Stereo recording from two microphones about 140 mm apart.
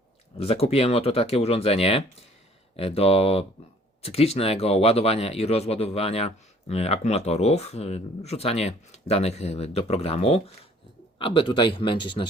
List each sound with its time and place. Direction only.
0.3 s a man's voice: 45° left (ahead or behind)